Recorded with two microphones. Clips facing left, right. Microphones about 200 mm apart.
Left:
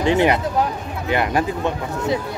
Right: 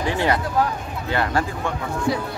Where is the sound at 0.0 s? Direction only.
20° left (ahead or behind).